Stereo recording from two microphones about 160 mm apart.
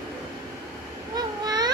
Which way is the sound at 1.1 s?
25° right (ahead or behind).